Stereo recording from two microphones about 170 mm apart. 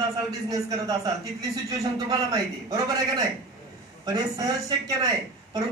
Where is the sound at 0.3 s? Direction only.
20° right (ahead or behind).